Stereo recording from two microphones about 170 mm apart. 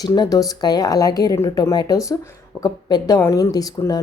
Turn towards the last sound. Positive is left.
turn(degrees=20)  # may be behind; listen again after turning